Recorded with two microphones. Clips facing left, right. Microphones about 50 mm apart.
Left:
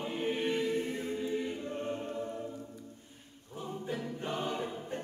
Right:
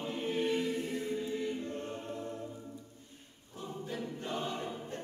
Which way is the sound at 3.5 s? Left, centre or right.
Left.